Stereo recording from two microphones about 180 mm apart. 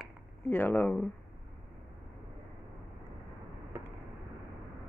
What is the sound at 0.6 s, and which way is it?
Speech, 10° left (ahead or behind).